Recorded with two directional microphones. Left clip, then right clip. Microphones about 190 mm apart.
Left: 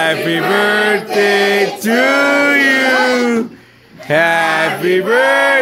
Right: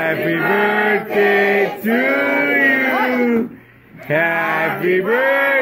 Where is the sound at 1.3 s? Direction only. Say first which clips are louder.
Left 2 dB; 15° left (ahead or behind).